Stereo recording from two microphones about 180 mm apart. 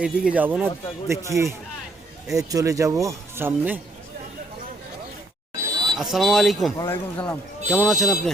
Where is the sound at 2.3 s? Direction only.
20° right (ahead or behind).